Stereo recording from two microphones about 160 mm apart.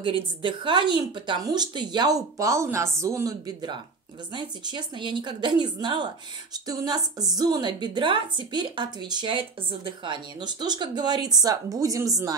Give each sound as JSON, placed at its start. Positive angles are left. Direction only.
{"t": 0.0, "sound": "a woman's voice", "side_deg": -30}